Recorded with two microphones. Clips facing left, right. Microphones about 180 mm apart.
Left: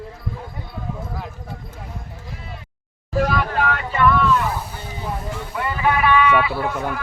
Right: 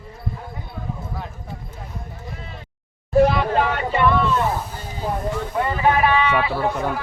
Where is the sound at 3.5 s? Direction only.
30° right (ahead or behind).